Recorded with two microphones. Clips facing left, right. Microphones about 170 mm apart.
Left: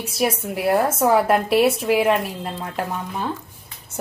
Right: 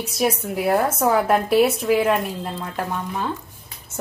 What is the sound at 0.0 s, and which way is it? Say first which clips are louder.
A woman's voice: even; 5° left (ahead or behind).